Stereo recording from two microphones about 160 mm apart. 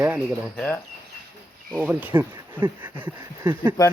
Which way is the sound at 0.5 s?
10° left (ahead or behind).